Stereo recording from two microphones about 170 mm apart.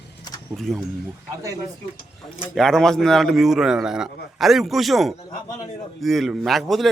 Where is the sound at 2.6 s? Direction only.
5° left (ahead or behind).